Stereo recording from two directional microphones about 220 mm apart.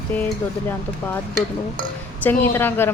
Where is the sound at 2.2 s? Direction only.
10° left (ahead or behind).